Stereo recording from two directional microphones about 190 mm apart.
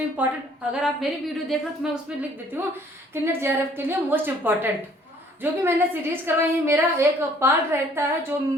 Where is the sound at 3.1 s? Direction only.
10° right (ahead or behind).